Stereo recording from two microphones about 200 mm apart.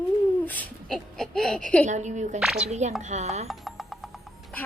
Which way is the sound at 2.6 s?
35° right (ahead or behind).